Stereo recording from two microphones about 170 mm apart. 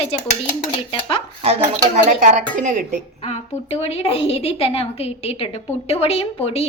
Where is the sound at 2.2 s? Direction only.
45° right (ahead or behind).